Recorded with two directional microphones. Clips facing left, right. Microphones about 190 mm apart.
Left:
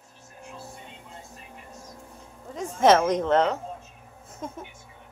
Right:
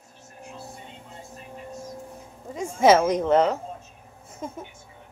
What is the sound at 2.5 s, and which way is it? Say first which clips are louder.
A woman's voice: right 1 dB; 5° right (ahead or behind).